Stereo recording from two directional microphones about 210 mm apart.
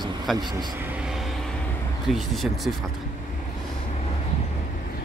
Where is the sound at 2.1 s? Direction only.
Centre (ahead or behind).